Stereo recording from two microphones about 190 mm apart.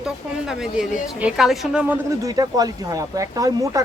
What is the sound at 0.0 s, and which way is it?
Speech, centre (ahead or behind).